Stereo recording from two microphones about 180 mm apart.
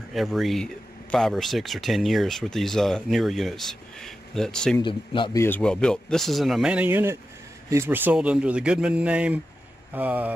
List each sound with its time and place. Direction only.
0.1 s speech: centre (ahead or behind)
4.8 s a man's voice: 25° left (ahead or behind)
5.4 s speech: 10° left (ahead or behind); by 10.3 s 10° right (ahead or behind)